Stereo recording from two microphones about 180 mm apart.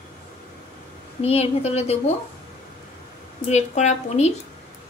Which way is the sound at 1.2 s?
35° left (ahead or behind).